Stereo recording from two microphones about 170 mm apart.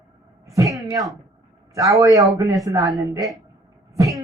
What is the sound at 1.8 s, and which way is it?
Speech, 20° right (ahead or behind).